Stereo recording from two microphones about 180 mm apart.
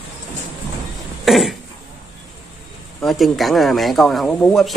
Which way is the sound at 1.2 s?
Centre (ahead or behind).